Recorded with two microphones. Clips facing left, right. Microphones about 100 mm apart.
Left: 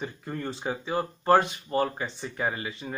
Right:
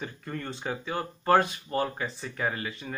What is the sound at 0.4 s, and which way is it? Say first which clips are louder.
Speech: left 3 dB; 5° left (ahead or behind).